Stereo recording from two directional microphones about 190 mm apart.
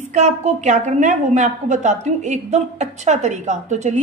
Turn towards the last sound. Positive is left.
turn(degrees=-40)  # may be behind; listen again after turning